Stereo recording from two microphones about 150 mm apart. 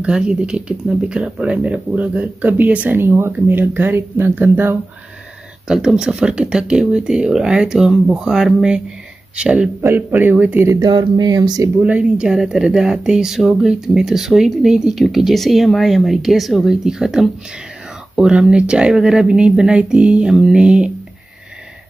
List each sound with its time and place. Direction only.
0.0 s speech: 5° right (ahead or behind); by 11.7 s 25° right (ahead or behind)
11.8 s speech: 10° right (ahead or behind)